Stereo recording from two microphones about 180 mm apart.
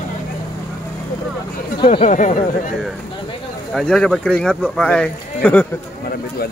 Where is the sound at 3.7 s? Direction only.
5° left (ahead or behind).